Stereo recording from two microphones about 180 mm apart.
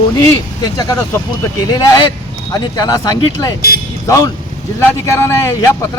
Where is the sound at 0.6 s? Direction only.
20° left (ahead or behind).